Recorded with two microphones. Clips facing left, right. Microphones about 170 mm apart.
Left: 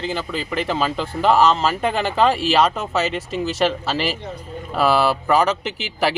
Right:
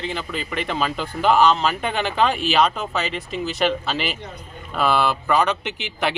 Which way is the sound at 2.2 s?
35° left (ahead or behind).